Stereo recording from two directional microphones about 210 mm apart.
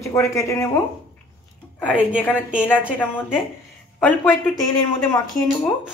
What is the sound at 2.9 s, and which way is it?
Speech, 10° left (ahead or behind).